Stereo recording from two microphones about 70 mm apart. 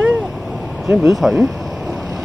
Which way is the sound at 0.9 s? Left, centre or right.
Centre.